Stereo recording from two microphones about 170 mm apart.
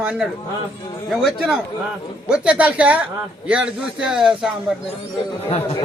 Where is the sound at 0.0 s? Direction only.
5° right (ahead or behind).